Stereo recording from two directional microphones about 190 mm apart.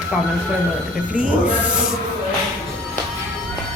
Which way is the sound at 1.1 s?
5° right (ahead or behind).